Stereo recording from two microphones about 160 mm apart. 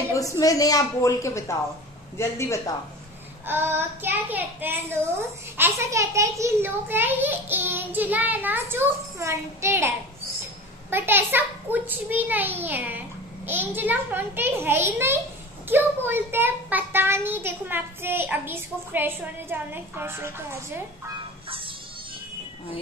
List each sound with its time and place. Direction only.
0.1 s a woman's voice: 20° left (ahead or behind)
3.4 s a child's voice: 15° right (ahead or behind)